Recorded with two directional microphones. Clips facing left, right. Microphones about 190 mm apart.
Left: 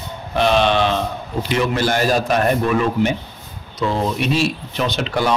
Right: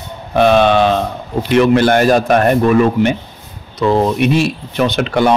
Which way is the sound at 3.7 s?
60° right (ahead or behind).